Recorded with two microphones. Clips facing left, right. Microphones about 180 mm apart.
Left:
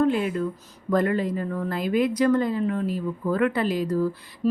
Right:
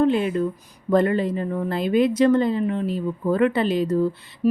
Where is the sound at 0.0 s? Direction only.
25° right (ahead or behind).